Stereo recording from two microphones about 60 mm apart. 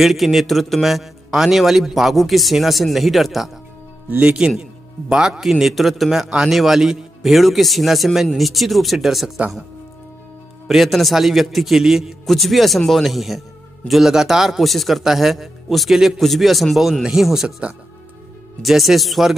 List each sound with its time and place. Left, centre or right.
0.0 s a man's voice: centre
4.2 s a man's voice: centre
5.4 s a man's voice: centre
10.7 s a man's voice: centre
18.6 s a man's voice: centre